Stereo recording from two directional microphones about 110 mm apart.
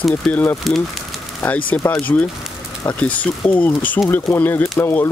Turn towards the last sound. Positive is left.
turn(degrees=25)  # may be behind; listen again after turning